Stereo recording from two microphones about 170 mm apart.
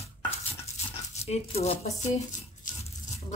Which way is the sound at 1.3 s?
35° left (ahead or behind).